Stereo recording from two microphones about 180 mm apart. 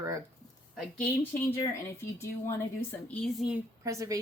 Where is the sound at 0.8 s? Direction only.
5° left (ahead or behind).